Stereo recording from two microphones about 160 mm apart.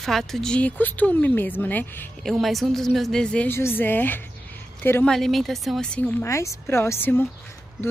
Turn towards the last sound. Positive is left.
turn(degrees=10)  # may be behind; listen again after turning